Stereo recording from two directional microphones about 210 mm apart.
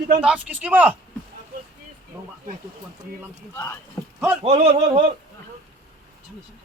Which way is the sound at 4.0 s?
15° left (ahead or behind).